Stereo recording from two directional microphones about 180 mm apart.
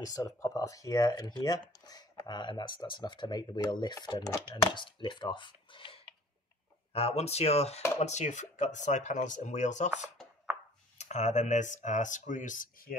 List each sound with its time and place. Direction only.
0.0 s speech: 20° left (ahead or behind); by 10.0 s 40° left (ahead or behind)
10.1 s chopping: 5° right (ahead or behind)
11.0 s speech: 40° left (ahead or behind)